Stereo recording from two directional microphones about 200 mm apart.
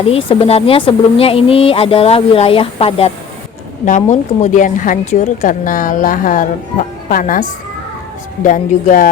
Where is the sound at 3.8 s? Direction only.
40° left (ahead or behind).